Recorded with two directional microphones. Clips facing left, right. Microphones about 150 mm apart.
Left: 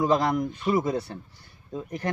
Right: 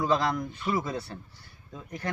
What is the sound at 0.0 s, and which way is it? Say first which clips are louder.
A man's voice: left 4 dB; 20° left (ahead or behind).